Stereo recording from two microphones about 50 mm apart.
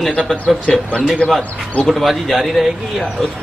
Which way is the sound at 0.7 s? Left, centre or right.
Centre.